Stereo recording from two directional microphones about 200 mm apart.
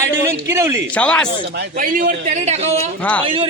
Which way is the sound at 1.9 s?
40° right (ahead or behind).